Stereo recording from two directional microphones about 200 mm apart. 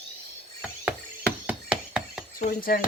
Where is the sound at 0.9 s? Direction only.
5° right (ahead or behind).